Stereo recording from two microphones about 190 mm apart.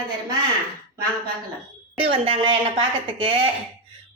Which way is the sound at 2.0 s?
30° right (ahead or behind).